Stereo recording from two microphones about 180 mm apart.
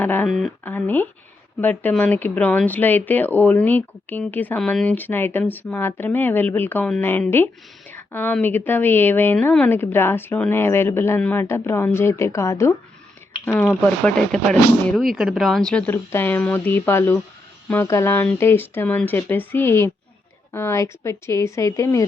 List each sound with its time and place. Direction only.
0.0 s speech: 10° left (ahead or behind)